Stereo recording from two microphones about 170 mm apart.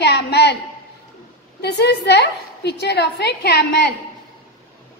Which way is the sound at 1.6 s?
80° left.